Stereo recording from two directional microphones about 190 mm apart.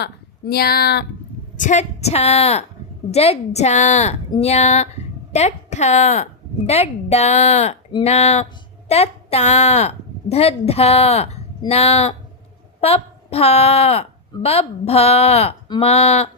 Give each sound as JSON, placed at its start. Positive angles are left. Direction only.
{"t": 0.0, "sound": "speech", "side_deg": 55}
{"t": 1.5, "sound": "a woman's voice", "side_deg": 40}